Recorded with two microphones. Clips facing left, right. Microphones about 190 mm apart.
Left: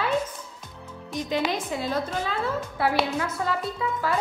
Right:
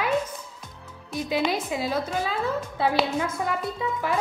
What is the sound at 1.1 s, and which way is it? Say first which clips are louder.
A woman's voice: right 1 dB; 10° right (ahead or behind).